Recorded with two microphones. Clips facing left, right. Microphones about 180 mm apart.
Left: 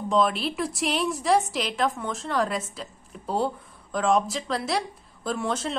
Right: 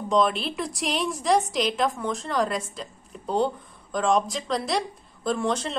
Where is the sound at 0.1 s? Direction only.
Centre (ahead or behind).